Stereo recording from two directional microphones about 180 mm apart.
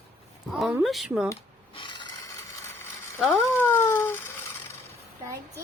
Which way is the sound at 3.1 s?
10° left (ahead or behind).